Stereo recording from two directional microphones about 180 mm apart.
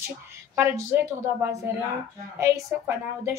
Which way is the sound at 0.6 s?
15° right (ahead or behind).